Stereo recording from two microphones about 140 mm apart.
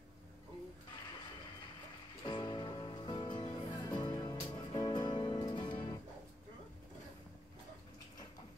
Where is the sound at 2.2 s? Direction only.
35° left (ahead or behind).